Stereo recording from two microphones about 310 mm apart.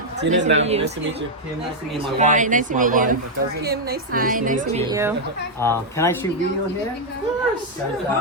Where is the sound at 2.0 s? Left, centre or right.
Right.